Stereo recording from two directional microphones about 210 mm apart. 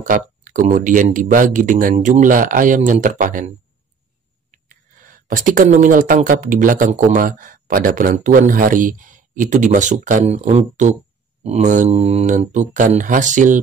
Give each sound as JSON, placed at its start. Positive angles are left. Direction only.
{"t": 0.0, "sound": "speech", "side_deg": -40}